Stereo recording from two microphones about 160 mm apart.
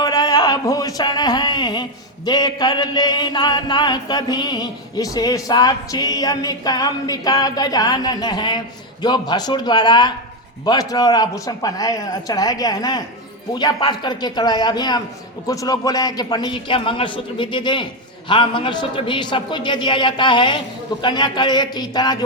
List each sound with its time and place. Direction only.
0.0 s speech: 25° left (ahead or behind)